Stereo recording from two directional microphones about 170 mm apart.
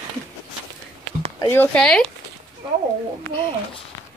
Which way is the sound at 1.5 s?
10° left (ahead or behind).